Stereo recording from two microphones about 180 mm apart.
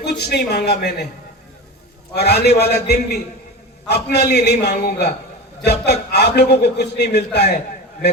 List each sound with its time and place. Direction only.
0.0 s a man's voice: 65° left (ahead or behind)
2.1 s a man's voice: 65° left (ahead or behind)